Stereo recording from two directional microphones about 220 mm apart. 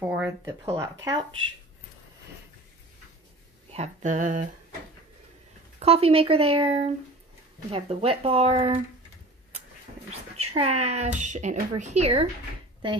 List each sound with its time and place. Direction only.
0.0 s speech: 10° right (ahead or behind)
3.7 s speech: 30° right (ahead or behind)
5.8 s speech: 25° right (ahead or behind)
10.3 s speech: 30° right (ahead or behind)